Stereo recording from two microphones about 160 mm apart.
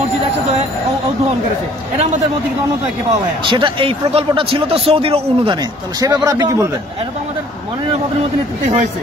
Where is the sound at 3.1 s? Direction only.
30° right (ahead or behind).